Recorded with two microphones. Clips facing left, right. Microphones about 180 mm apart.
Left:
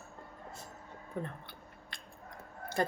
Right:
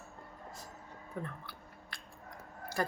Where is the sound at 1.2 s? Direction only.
20° left (ahead or behind).